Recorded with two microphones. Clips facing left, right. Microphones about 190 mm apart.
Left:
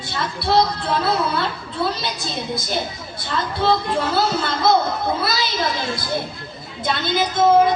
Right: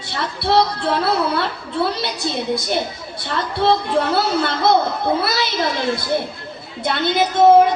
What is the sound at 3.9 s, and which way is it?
A woman's voice, 65° right (ahead or behind).